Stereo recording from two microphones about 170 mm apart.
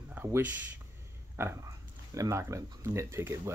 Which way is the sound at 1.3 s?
15° right (ahead or behind).